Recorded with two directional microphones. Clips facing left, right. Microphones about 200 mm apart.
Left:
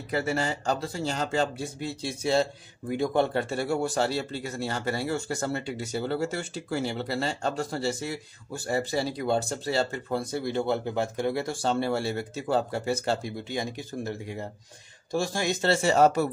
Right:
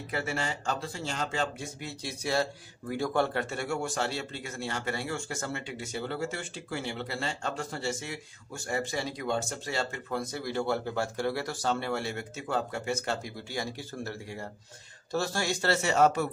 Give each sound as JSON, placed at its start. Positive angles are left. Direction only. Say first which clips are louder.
{"t": 0.1, "sound": "speech", "louder": "left 6 dB", "side_deg": 40}
{"t": 3.4, "sound": "speech", "louder": "left 5 dB", "side_deg": 35}